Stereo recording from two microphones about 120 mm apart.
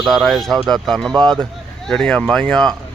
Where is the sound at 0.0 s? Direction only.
Centre (ahead or behind).